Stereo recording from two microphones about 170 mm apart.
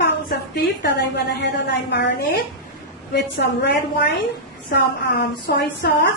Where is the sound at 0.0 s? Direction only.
75° left (ahead or behind).